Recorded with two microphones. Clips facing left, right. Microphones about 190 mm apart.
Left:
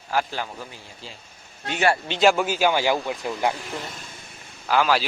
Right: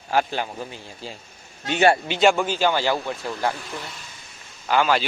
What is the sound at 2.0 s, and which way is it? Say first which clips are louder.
A man's voice: even; centre (ahead or behind).